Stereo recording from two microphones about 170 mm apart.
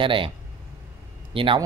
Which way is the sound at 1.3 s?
30° right (ahead or behind).